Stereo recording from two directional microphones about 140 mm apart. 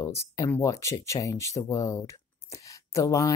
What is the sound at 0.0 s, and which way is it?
Speech, 20° left (ahead or behind).